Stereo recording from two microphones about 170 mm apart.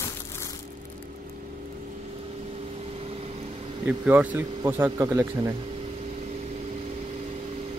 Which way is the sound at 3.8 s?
10° right (ahead or behind).